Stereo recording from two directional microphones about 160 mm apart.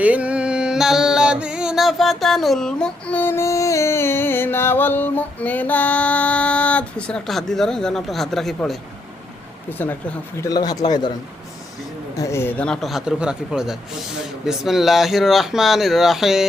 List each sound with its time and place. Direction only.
0.0 s music: 10° right (ahead or behind)
9.6 s speech: 10° left (ahead or behind)
10.4 s speech: 25° left (ahead or behind)
12.1 s music: 20° left (ahead or behind); by 16.5 s centre (ahead or behind)